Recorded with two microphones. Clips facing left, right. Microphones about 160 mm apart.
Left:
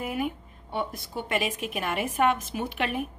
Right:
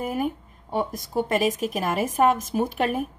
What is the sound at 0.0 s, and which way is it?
A woman's voice, 40° right (ahead or behind).